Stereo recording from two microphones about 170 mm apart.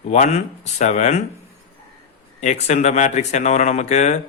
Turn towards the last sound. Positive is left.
turn(degrees=45)  # may be behind; listen again after turning